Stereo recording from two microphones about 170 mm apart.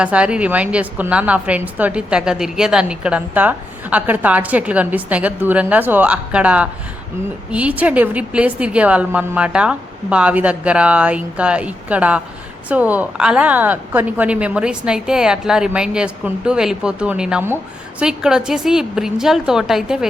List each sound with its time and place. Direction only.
0.0 s a woman's voice: 5° right (ahead or behind)